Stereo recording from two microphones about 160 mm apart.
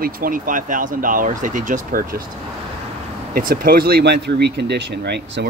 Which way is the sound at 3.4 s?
65° right (ahead or behind).